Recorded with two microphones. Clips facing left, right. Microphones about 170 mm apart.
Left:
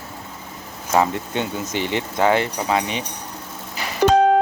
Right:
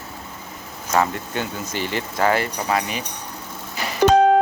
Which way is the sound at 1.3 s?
20° left (ahead or behind).